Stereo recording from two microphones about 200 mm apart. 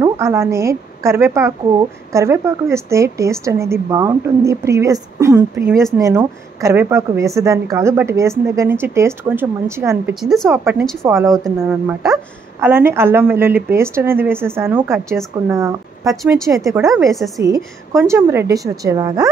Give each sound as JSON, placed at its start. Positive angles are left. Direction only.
{"t": 0.0, "sound": "a woman's voice", "side_deg": -15}
{"t": 16.2, "sound": "a woman's voice", "side_deg": 0}
{"t": 17.4, "sound": "a woman's voice", "side_deg": -15}